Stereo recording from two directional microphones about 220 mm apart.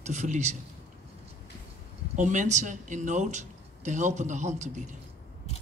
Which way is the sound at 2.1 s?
35° right (ahead or behind).